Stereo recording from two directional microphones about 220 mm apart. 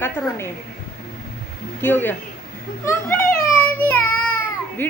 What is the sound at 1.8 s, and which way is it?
A child's voice, 10° left (ahead or behind).